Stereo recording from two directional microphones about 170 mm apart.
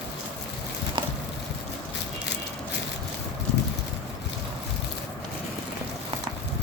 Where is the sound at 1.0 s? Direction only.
30° right (ahead or behind).